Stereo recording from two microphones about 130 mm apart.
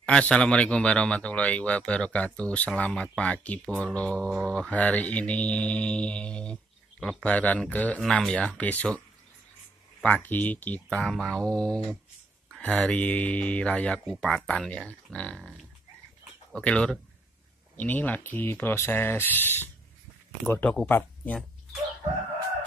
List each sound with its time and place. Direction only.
0.0 s speech: 10° left (ahead or behind)
10.0 s speech: 10° left (ahead or behind)